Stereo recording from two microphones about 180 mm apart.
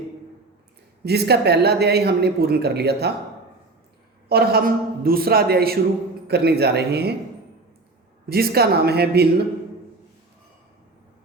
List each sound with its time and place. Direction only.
1.0 s a woman's voice: 65° right (ahead or behind)
4.3 s a woman's voice: 60° right (ahead or behind)
8.3 s a woman's voice: 60° right (ahead or behind)